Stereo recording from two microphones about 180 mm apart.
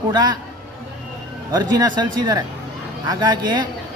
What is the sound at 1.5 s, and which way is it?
Speech, 20° right (ahead or behind).